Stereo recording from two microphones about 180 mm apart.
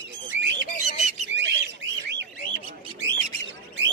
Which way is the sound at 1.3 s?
80° right.